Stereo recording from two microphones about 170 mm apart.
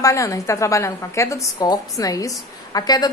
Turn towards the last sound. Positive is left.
turn(degrees=25)  # may be behind; listen again after turning